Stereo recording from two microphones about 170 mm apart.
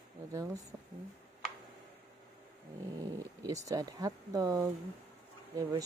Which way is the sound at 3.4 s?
20° right (ahead or behind).